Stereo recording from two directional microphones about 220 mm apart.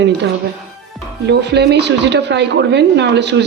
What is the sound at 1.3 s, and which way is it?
A woman's voice, 50° right (ahead or behind).